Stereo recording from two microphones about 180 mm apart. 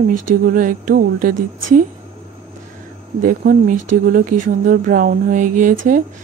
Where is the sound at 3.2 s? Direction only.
50° right (ahead or behind).